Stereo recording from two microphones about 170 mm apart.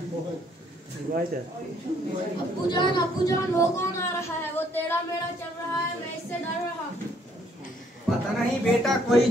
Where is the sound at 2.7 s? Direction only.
25° left (ahead or behind).